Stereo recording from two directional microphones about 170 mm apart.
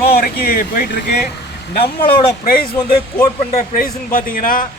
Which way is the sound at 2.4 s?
60° left (ahead or behind).